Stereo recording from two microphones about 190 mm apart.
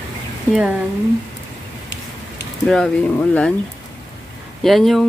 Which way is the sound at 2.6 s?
5° left (ahead or behind).